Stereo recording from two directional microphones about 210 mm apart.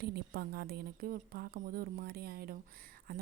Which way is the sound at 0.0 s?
50° right (ahead or behind).